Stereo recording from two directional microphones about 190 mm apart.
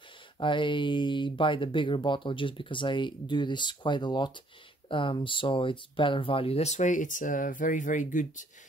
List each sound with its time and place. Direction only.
0.4 s speech: 25° left (ahead or behind); by 8.5 s 40° left (ahead or behind)